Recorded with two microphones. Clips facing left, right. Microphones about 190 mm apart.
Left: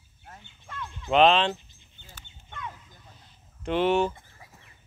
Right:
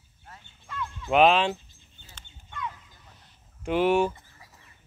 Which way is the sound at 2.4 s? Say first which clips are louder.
Right 3 dB; 55° left (ahead or behind).